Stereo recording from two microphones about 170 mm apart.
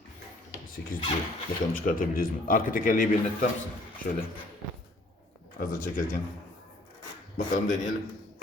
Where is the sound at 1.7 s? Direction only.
55° left (ahead or behind).